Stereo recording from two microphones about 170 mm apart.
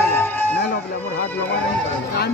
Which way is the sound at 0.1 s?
10° left (ahead or behind).